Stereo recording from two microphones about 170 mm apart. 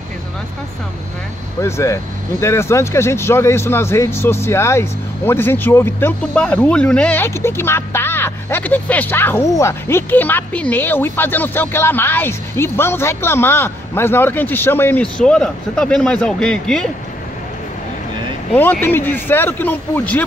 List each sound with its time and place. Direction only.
1.6 s speech: 15° left (ahead or behind)
18.5 s speech: 10° left (ahead or behind)